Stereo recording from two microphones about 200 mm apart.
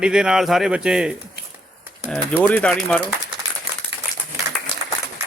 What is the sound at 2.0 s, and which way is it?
Speech, 5° left (ahead or behind).